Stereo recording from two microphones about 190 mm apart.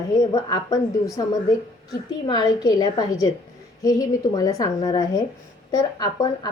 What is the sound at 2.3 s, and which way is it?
A woman's voice, 20° left (ahead or behind).